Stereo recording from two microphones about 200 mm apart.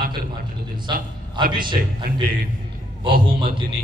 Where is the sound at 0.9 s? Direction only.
25° right (ahead or behind).